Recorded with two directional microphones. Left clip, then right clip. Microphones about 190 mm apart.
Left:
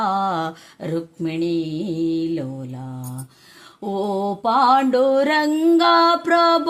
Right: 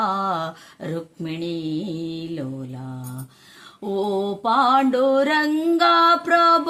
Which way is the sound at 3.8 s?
25° left (ahead or behind).